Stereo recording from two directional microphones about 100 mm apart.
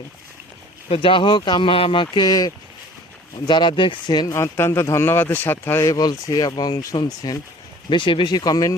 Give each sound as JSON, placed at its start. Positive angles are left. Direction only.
{"t": 0.9, "sound": "speech", "side_deg": 65}
{"t": 4.4, "sound": "speech", "side_deg": 25}
{"t": 5.9, "sound": "speech", "side_deg": 40}
{"t": 7.9, "sound": "speech", "side_deg": 55}